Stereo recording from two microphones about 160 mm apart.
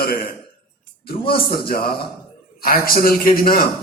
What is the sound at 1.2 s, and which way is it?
A man's voice, 70° left (ahead or behind).